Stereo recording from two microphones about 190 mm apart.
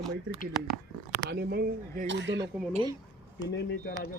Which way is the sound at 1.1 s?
60° right (ahead or behind).